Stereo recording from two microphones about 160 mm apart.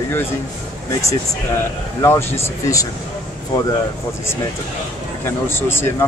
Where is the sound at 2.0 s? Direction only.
15° left (ahead or behind).